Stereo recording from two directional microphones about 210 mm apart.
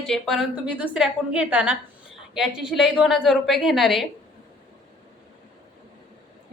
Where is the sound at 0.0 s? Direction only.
Centre (ahead or behind).